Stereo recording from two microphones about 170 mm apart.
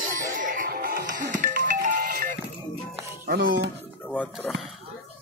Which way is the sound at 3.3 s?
85° right.